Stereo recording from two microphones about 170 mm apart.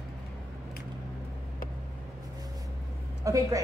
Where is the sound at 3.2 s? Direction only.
20° right (ahead or behind).